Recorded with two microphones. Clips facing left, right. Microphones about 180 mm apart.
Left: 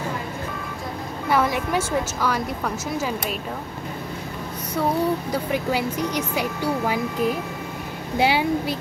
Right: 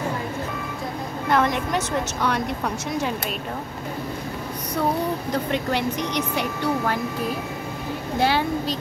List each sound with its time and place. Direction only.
1.3 s a woman's voice: 5° left (ahead or behind)
5.3 s speech: 5° left (ahead or behind)